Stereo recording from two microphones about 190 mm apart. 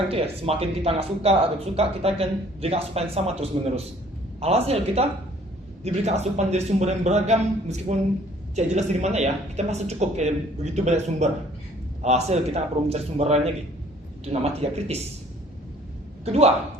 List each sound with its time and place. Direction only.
0.1 s speech: 30° right (ahead or behind)
16.2 s speech: 35° right (ahead or behind)